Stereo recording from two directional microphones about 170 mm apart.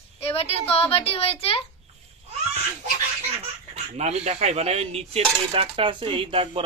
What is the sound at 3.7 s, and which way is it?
Cutlery, 40° right (ahead or behind).